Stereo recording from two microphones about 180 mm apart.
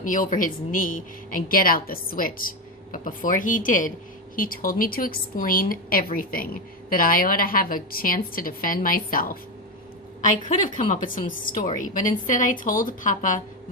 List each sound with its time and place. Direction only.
0.0 s speech: 50° left (ahead or behind)
10.9 s speech: 50° left (ahead or behind)